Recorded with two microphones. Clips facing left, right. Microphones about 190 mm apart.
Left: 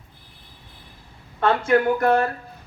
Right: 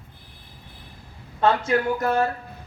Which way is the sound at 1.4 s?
55° left (ahead or behind).